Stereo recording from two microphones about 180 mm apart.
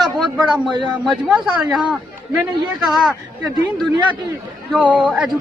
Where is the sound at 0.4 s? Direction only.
25° right (ahead or behind).